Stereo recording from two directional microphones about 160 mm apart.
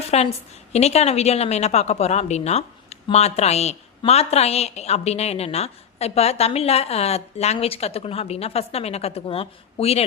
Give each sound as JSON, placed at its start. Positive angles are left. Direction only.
{"t": 0.1, "sound": "a woman's voice", "side_deg": 40}